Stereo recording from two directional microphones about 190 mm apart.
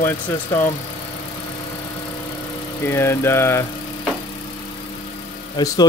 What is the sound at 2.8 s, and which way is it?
Speech, 15° left (ahead or behind).